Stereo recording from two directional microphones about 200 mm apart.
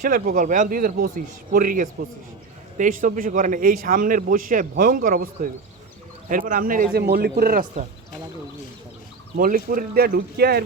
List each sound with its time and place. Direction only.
0.0 s speech: 45° right (ahead or behind)
9.4 s speech: 45° right (ahead or behind)